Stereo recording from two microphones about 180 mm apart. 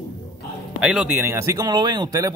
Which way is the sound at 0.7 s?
5° right (ahead or behind).